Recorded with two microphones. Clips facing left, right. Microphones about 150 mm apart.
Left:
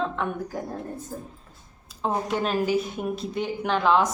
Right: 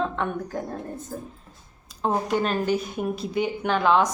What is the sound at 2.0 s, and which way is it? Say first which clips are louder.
A woman's voice: right 2 dB; centre (ahead or behind).